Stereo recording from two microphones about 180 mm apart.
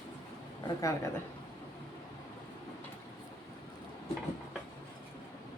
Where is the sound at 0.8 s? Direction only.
15° left (ahead or behind).